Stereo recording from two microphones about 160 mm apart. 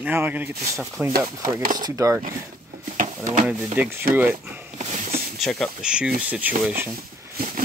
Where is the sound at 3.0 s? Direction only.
55° right (ahead or behind).